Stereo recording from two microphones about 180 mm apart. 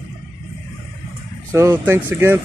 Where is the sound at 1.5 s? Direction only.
15° right (ahead or behind).